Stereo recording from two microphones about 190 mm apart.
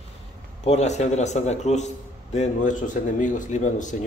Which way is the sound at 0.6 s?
35° left (ahead or behind).